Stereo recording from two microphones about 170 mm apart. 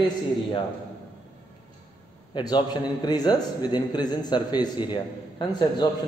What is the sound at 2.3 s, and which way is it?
A man's voice, 25° left (ahead or behind).